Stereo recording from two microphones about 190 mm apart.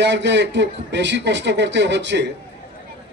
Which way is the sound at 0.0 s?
65° right (ahead or behind).